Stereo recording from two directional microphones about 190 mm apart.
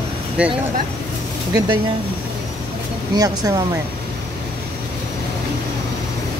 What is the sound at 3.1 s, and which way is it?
Speech, 20° right (ahead or behind).